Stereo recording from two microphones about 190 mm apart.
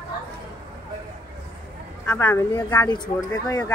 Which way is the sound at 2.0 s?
10° left (ahead or behind).